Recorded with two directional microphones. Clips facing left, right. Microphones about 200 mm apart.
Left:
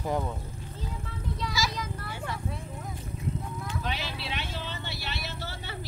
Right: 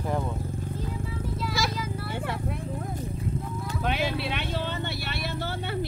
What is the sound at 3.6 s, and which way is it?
Vehicle, 55° right (ahead or behind).